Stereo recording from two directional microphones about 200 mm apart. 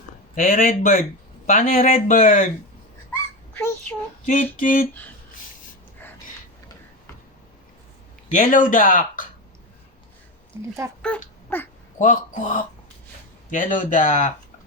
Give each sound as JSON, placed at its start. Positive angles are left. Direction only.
{"t": 0.3, "sound": "speech", "side_deg": 45}
{"t": 3.5, "sound": "a sound", "side_deg": 10}
{"t": 4.5, "sound": "speech", "side_deg": 45}
{"t": 8.3, "sound": "speech", "side_deg": 40}
{"t": 11.0, "sound": "a sound", "side_deg": 10}
{"t": 11.9, "sound": "speech", "side_deg": 40}